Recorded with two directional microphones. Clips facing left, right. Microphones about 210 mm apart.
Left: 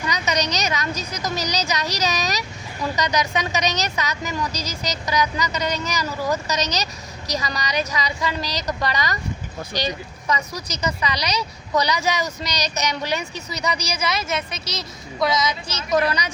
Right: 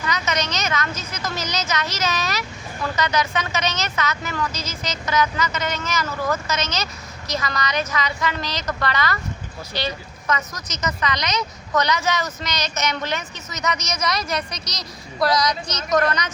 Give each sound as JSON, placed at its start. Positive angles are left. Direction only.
{"t": 0.0, "sound": "speech", "side_deg": 15}
{"t": 4.5, "sound": "speech", "side_deg": 40}
{"t": 4.9, "sound": "a woman's voice", "side_deg": 15}